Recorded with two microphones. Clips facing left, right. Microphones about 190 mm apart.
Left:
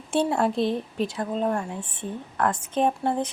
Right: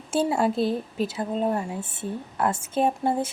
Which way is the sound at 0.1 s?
Centre (ahead or behind).